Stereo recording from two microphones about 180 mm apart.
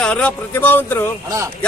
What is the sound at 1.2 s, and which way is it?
Speech, 20° right (ahead or behind).